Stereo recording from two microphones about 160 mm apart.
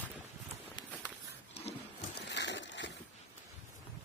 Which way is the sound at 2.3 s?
90° left.